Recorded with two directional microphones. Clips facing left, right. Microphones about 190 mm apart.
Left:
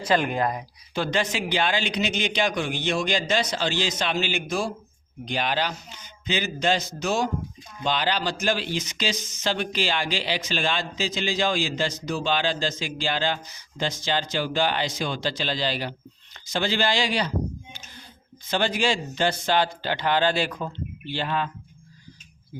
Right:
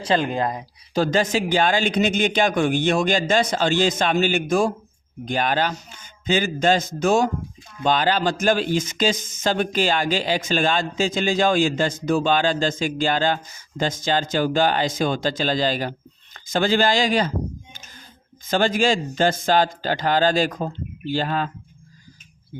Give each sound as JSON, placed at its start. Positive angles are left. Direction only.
{"t": 0.0, "sound": "speech", "side_deg": -30}
{"t": 0.9, "sound": "speech", "side_deg": -40}
{"t": 18.5, "sound": "speech", "side_deg": -45}